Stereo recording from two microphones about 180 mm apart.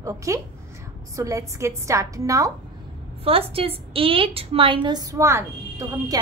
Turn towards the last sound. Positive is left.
turn(degrees=-20)  # may be behind; listen again after turning